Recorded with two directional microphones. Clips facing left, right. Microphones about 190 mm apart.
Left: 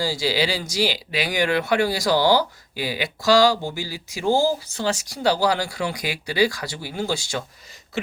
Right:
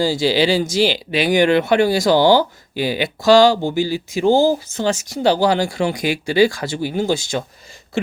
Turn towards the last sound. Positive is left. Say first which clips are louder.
# right 6 dB
turn(degrees=-20)  # may be behind; listen again after turning